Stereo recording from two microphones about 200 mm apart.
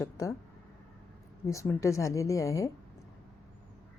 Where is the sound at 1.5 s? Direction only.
15° left (ahead or behind).